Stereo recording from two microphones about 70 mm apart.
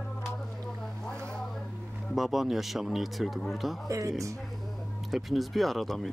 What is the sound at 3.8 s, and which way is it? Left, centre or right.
Speech, right.